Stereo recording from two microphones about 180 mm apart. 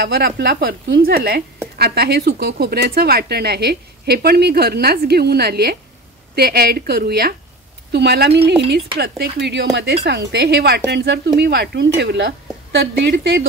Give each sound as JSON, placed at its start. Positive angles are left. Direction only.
{"t": 0.0, "sound": "a woman's voice", "side_deg": -60}